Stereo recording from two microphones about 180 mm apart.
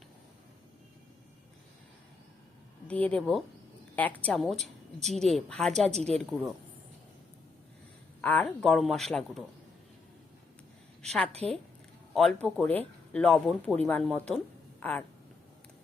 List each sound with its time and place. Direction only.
2.8 s a woman's voice: 5° left (ahead or behind)
8.2 s speech: 10° left (ahead or behind)
11.0 s a woman's voice: 5° left (ahead or behind)
11.3 s a woman's voice: 35° right (ahead or behind)
12.1 s a woman's voice: centre (ahead or behind)